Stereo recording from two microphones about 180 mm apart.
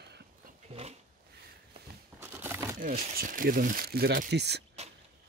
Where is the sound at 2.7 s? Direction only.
50° right (ahead or behind); by 4.6 s 70° right (ahead or behind).